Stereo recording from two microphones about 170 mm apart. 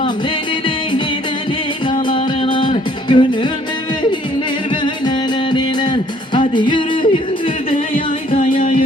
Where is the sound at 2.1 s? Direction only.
30° left (ahead or behind).